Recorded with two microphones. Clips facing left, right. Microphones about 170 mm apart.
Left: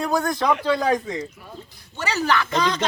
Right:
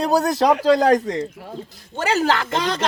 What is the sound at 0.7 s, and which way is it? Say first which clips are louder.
Speech: right 7 dB; 90° right.